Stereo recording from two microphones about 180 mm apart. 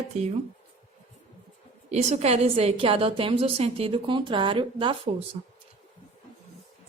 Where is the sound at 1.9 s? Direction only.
40° right (ahead or behind).